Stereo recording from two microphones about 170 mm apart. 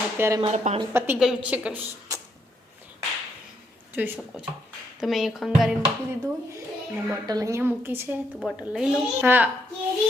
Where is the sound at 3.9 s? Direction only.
10° right (ahead or behind).